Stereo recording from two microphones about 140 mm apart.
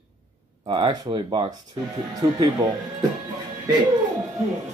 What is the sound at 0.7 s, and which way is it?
Speech, 35° right (ahead or behind).